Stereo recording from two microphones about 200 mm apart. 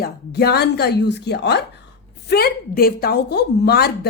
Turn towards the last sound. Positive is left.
turn(degrees=50)  # may be behind; listen again after turning